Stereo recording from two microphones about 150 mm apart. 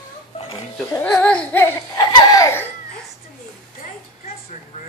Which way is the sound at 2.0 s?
30° left (ahead or behind).